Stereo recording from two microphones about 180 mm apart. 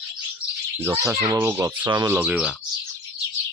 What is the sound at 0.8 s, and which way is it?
Speech, 15° right (ahead or behind).